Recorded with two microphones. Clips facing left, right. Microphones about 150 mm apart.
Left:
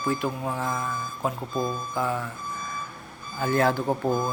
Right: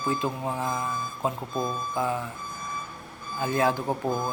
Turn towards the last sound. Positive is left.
turn(degrees=0)  # may be behind; listen again after turning